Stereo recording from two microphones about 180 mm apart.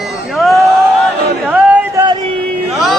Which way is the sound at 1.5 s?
10° right (ahead or behind).